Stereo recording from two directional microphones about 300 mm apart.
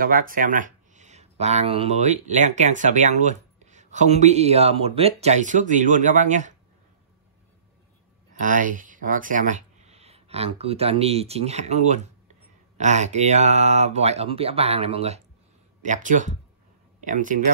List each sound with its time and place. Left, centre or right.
0.0 s speech: right
8.4 s speech: right